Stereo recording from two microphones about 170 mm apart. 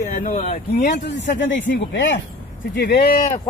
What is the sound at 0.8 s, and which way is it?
Speech, 90° left.